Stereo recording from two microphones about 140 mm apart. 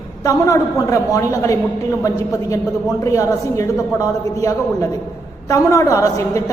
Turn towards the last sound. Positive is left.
turn(degrees=25)  # may be behind; listen again after turning